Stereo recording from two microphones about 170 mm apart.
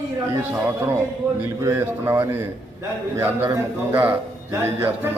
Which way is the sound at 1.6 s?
20° right (ahead or behind).